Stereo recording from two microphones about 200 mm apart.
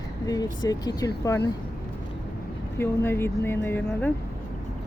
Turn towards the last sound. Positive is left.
turn(degrees=10)  # may be behind; listen again after turning